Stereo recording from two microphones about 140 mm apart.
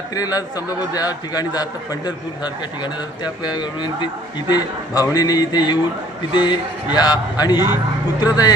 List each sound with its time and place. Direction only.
0.1 s a man's voice: 25° left (ahead or behind)